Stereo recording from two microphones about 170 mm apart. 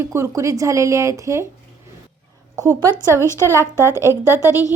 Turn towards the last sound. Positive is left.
turn(degrees=20)  # may be behind; listen again after turning